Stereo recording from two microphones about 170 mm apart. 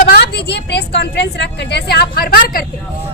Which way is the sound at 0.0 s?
75° left (ahead or behind).